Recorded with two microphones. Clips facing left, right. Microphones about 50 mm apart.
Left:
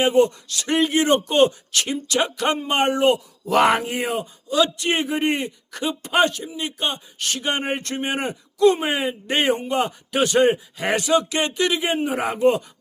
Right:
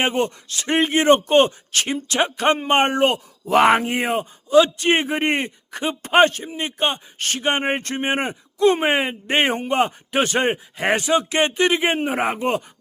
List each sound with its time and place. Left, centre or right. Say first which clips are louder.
0.0 s a man's voice: left 4 dB; right
3.4 s a man's voice: right 2 dB; right